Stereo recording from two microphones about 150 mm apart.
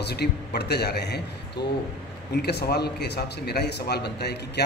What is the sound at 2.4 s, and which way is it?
A man's voice, 90° left.